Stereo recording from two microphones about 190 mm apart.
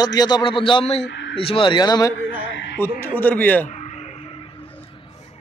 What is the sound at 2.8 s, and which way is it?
Speech, 10° left (ahead or behind).